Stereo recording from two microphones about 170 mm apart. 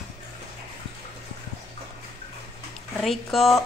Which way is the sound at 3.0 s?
Centre (ahead or behind).